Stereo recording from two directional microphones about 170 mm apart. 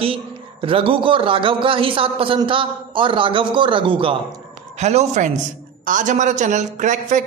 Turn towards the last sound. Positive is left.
turn(degrees=-50)  # may be behind; listen again after turning